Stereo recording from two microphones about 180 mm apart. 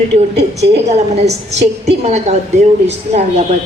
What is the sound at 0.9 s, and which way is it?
A woman's voice, 35° right (ahead or behind).